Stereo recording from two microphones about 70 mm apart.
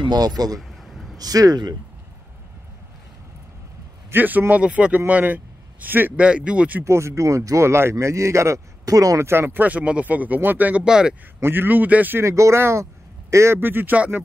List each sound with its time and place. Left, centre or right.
0.1 s a man's voice: right
0.6 s a sound: centre
1.1 s speech: right
4.1 s a man's voice: right
6.2 s speech: centre
6.8 s speech: right
9.2 s a man's voice: right
10.9 s speech: centre
11.4 s a man's voice: right
12.2 s speech: right
13.6 s a man's voice: right